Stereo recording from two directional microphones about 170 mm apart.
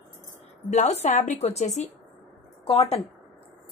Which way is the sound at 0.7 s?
45° left (ahead or behind).